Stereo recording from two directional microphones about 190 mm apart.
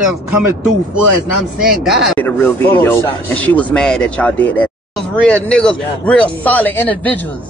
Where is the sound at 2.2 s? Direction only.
10° left (ahead or behind).